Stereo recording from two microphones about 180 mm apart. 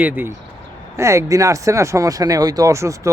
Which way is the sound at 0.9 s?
15° right (ahead or behind).